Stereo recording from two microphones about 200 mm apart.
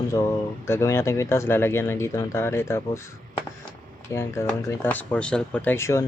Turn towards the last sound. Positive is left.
turn(degrees=15)  # may be behind; listen again after turning